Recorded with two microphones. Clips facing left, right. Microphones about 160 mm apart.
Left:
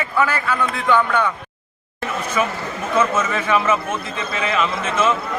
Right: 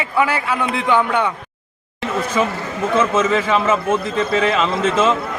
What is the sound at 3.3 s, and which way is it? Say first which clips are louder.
A man's voice: right 2 dB; 30° right (ahead or behind).